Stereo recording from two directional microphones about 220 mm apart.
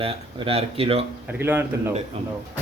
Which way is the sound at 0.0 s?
25° right (ahead or behind).